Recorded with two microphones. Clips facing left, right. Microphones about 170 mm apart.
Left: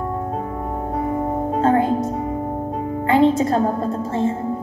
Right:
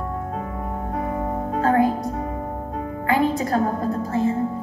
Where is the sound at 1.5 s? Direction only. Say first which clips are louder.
Left 1 dB; 25° left (ahead or behind).